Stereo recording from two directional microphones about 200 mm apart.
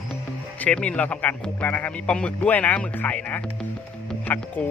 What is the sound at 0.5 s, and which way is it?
Speech, 5° left (ahead or behind).